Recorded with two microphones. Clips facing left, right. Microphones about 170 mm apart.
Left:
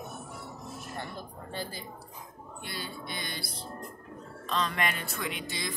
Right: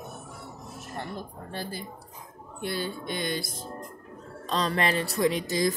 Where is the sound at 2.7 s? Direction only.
50° right (ahead or behind).